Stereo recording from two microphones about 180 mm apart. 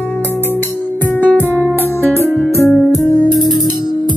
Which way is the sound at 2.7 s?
Centre (ahead or behind).